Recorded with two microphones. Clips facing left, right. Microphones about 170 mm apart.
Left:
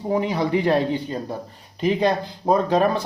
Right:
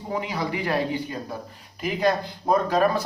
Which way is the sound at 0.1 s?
25° left (ahead or behind).